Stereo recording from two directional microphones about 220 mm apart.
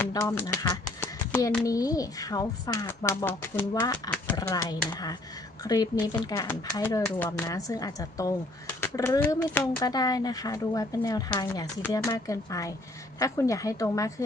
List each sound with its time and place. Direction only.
0.0 s speech: 15° left (ahead or behind)